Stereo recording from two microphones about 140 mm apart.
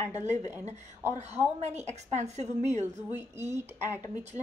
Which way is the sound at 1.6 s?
55° right (ahead or behind).